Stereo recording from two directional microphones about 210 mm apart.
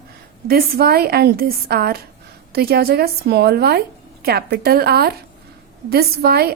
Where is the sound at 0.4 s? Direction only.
45° right (ahead or behind).